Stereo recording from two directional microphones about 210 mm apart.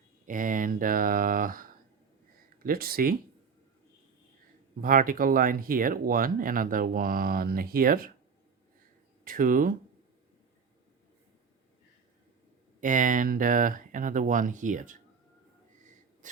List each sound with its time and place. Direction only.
0.3 s speech: 40° right (ahead or behind)
4.8 s speech: 40° right (ahead or behind)
9.2 s speech: 40° right (ahead or behind)
12.8 s speech: 40° right (ahead or behind)
16.2 s a sound: 35° right (ahead or behind)